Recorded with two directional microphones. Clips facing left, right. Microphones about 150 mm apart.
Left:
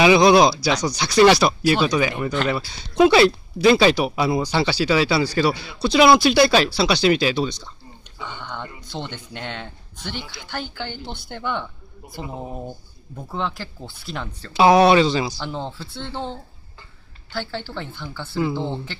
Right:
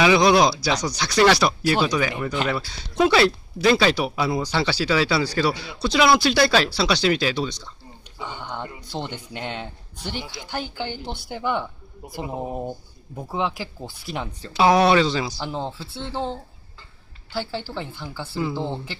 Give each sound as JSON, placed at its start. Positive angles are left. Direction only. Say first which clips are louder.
{"t": 0.0, "sound": "speech", "louder": "left 3 dB", "side_deg": 20}
{"t": 8.2, "sound": "speech", "louder": "right 1 dB", "side_deg": -10}
{"t": 13.3, "sound": "speech", "louder": "right 2 dB", "side_deg": -10}
{"t": 14.5, "sound": "speech", "louder": "left 3 dB", "side_deg": 20}
{"t": 15.3, "sound": "speech", "louder": "even", "side_deg": -5}